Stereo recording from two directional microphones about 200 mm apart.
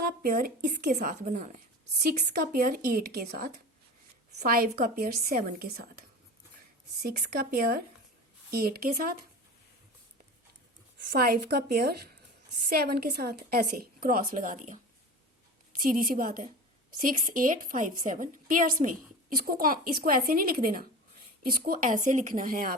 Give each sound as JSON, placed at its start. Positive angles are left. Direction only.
{"t": 0.0, "sound": "a woman's voice", "side_deg": -45}
{"t": 7.0, "sound": "a woman's voice", "side_deg": -45}
{"t": 11.1, "sound": "a woman's voice", "side_deg": -50}
{"t": 15.8, "sound": "a woman's voice", "side_deg": -45}